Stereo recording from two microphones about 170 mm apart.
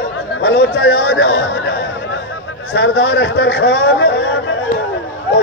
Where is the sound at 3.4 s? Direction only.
90° left.